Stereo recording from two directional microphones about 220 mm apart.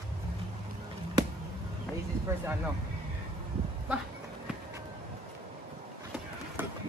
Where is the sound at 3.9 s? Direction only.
5° right (ahead or behind).